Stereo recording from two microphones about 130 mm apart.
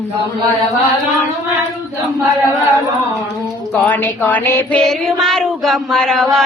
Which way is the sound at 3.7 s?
15° left (ahead or behind).